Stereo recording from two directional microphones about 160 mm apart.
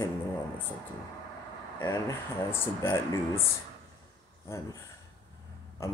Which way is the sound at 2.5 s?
15° left (ahead or behind).